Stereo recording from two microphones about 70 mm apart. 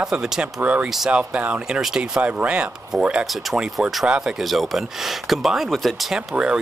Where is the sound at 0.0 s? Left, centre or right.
Centre.